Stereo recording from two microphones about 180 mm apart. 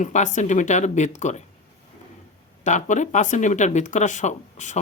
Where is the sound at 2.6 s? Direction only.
45° left (ahead or behind).